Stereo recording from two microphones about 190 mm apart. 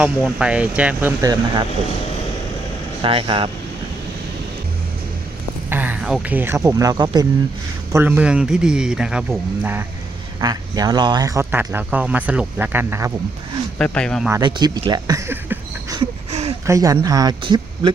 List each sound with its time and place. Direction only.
0.3 s speech: 5° right (ahead or behind)
3.0 s speech: 30° right (ahead or behind)
5.7 s speech: 10° right (ahead or behind)
7.9 s speech: 10° right (ahead or behind)
10.4 s speech: 20° right (ahead or behind)
13.7 s speech: 5° left (ahead or behind)
14.4 s speech: 25° right (ahead or behind)
16.0 s a sound: 30° right (ahead or behind)
16.6 s speech: 15° right (ahead or behind)